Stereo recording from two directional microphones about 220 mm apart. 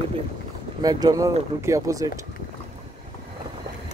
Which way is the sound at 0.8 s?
15° right (ahead or behind).